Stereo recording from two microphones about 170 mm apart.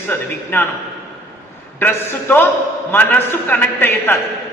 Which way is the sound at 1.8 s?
10° left (ahead or behind).